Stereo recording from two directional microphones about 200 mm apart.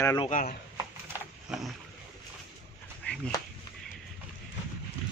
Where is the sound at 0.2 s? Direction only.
35° left (ahead or behind).